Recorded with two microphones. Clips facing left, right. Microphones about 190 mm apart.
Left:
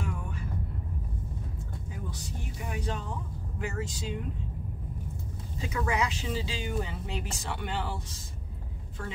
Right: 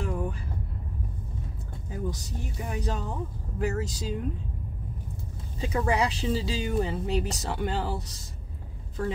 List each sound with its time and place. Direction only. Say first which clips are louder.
0.0 s vehicle: right 6 dB; 35° right (ahead or behind)
2.7 s speech: right 3 dB; 40° right (ahead or behind)
5.6 s speech: right 4 dB; 35° right (ahead or behind)